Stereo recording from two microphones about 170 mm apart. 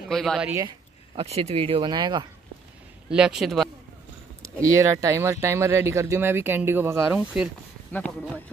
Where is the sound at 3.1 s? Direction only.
5° right (ahead or behind).